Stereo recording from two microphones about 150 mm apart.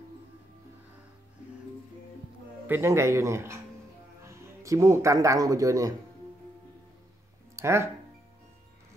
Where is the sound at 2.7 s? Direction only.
15° right (ahead or behind).